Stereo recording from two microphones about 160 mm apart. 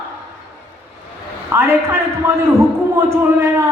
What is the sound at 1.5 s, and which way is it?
A man's voice, 15° right (ahead or behind).